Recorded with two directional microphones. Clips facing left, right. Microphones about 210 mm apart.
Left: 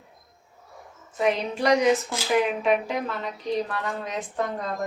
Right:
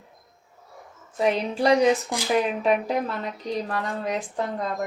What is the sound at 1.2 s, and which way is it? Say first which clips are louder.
Speech: right 1 dB; 30° right (ahead or behind).